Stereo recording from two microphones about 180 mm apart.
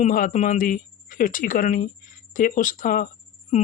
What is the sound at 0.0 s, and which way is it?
Speech, 45° left (ahead or behind).